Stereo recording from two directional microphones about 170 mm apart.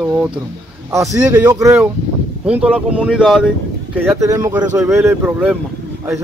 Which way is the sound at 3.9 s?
15° right (ahead or behind).